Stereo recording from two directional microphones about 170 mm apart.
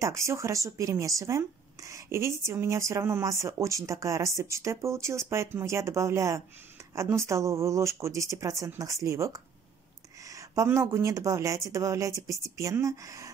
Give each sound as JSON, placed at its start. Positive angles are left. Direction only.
{"t": 0.0, "sound": "speech", "side_deg": -15}